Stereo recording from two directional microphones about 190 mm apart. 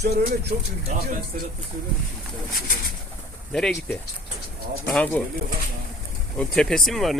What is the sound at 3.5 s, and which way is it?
Speech, 5° left (ahead or behind).